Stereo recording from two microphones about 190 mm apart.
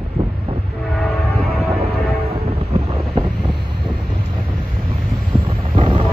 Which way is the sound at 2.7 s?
25° right (ahead or behind).